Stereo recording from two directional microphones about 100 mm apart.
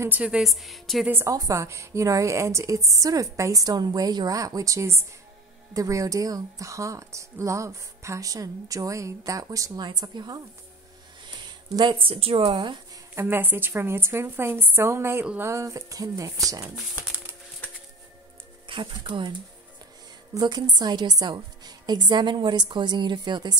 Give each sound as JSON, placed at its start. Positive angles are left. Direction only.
{"t": 0.2, "sound": "a woman's voice", "side_deg": -5}
{"t": 1.0, "sound": "a woman's voice", "side_deg": -20}
{"t": 1.3, "sound": "a woman's voice", "side_deg": -35}
{"t": 11.7, "sound": "a woman's voice", "side_deg": -50}
{"t": 13.1, "sound": "a woman's voice", "side_deg": -20}
{"t": 18.7, "sound": "a woman's voice", "side_deg": -55}
{"t": 20.3, "sound": "a woman's voice", "side_deg": -45}